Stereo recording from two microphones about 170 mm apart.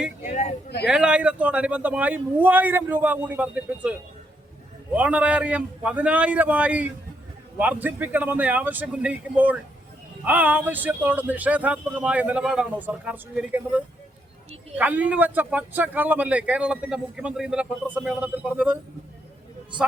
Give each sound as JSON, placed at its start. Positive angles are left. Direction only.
{"t": 0.2, "sound": "a sound", "side_deg": 45}
{"t": 0.9, "sound": "speech", "side_deg": -5}
{"t": 4.9, "sound": "speech", "side_deg": -10}